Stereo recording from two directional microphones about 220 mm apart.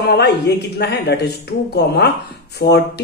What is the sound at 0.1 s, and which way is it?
A woman's voice, 50° left (ahead or behind).